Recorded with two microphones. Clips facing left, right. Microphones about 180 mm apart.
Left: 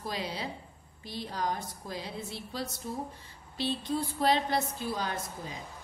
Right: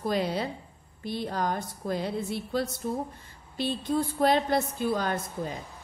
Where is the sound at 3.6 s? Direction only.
50° right (ahead or behind).